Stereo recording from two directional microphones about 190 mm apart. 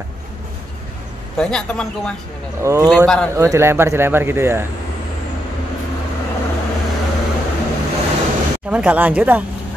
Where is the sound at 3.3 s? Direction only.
15° right (ahead or behind).